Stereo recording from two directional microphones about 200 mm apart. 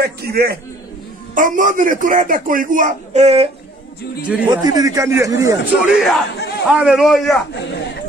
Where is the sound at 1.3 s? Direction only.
40° right (ahead or behind).